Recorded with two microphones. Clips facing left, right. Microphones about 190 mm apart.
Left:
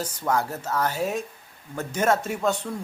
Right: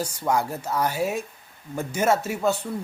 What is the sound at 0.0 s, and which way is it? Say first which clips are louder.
A man's voice: right 1 dB; 10° right (ahead or behind).